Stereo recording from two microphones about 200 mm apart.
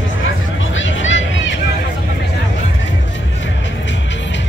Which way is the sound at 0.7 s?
70° left (ahead or behind).